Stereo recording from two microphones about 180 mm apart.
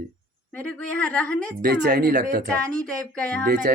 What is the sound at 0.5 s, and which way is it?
A woman's voice, 5° left (ahead or behind).